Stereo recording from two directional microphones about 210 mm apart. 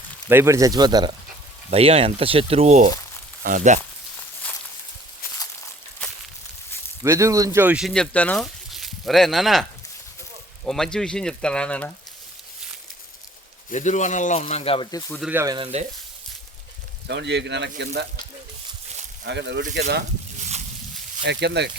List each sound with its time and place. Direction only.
0.3 s speech: 10° right (ahead or behind); by 3.8 s 35° right (ahead or behind)
4.4 s walk: 5° left (ahead or behind)
7.0 s speech: 15° right (ahead or behind); by 11.9 s 5° left (ahead or behind)
13.7 s speech: 35° left (ahead or behind); by 15.2 s 15° left (ahead or behind)
15.2 s speech: 10° right (ahead or behind)
15.5 s speech: 25° right (ahead or behind)
17.1 s speech: 55° right (ahead or behind)
19.2 s speech: 55° right (ahead or behind)
21.2 s speech: 55° right (ahead or behind)